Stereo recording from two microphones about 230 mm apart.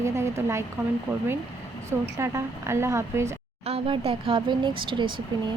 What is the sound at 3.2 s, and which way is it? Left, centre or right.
Speech, right.